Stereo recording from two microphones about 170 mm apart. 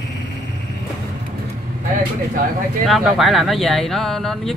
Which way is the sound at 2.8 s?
Centre (ahead or behind).